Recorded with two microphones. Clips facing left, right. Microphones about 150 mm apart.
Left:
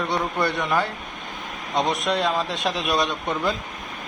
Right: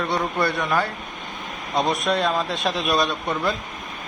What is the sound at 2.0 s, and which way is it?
A man's voice, 15° left (ahead or behind).